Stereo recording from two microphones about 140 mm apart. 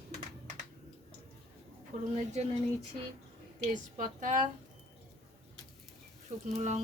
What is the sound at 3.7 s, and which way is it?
Speech, 65° right (ahead or behind).